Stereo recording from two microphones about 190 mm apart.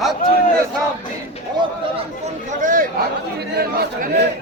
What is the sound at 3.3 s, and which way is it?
Speech, 60° right (ahead or behind).